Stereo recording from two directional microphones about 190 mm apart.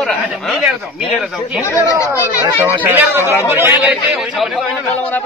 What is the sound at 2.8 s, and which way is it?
Speech, 10° right (ahead or behind).